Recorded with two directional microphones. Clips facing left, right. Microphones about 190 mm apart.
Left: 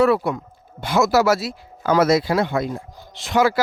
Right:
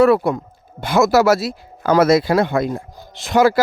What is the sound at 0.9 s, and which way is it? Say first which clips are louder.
Speech: right 3 dB; 50° right (ahead or behind).